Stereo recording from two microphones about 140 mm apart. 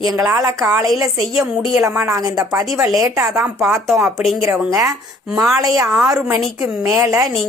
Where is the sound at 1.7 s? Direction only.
15° right (ahead or behind).